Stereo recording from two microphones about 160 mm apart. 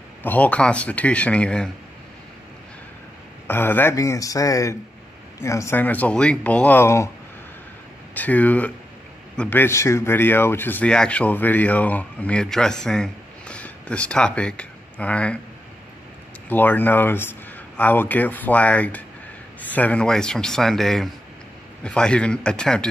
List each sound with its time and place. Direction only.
0.2 s speech: 10° left (ahead or behind)
3.4 s speech: 15° left (ahead or behind)
8.1 s speech: 10° left (ahead or behind)
16.4 s speech: 10° left (ahead or behind)